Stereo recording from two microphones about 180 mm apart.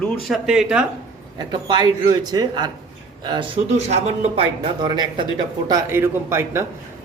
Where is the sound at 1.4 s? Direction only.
25° right (ahead or behind).